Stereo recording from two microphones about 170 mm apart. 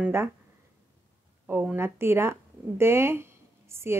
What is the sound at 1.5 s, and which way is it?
Speech, 15° right (ahead or behind).